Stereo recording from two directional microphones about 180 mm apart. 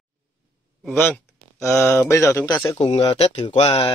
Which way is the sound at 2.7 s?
30° left (ahead or behind).